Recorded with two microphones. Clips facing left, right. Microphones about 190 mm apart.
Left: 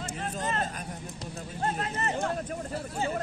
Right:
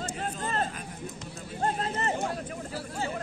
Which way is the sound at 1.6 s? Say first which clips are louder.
Right 2 dB; 30° right (ahead or behind).